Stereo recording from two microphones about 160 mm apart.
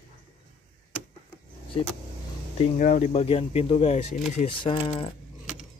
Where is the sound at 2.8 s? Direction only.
50° left (ahead or behind).